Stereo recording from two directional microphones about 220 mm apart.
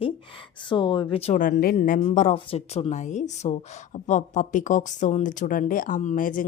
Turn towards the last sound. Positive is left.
turn(degrees=35)  # may be behind; listen again after turning